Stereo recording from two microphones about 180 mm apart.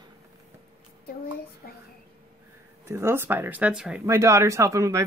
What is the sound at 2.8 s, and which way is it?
Speech, 15° right (ahead or behind).